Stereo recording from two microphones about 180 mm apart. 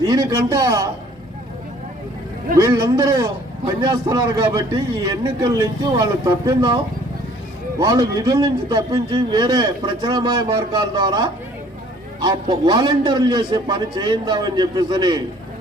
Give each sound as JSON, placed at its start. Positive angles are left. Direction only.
{"t": 0.0, "sound": "a man's voice", "side_deg": -20}
{"t": 2.6, "sound": "a man's voice", "side_deg": -20}
{"t": 7.8, "sound": "a man's voice", "side_deg": -20}